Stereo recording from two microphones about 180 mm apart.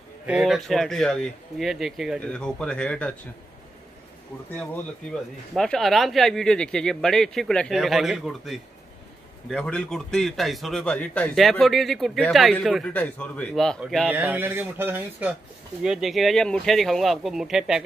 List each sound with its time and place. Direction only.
0.3 s speech: centre (ahead or behind)
5.5 s speech: centre (ahead or behind)
14.1 s speech: 15° right (ahead or behind)